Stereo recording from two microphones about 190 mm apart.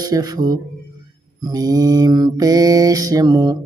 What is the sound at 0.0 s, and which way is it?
Mantra, 20° right (ahead or behind).